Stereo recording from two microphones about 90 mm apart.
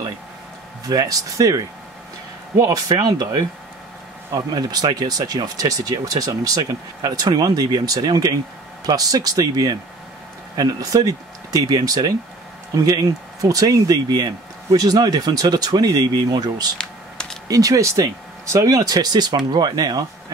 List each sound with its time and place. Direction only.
0.8 s speech: 45° right (ahead or behind)
16.7 s computer keyboard: 5° left (ahead or behind)
17.5 s speech: 40° right (ahead or behind)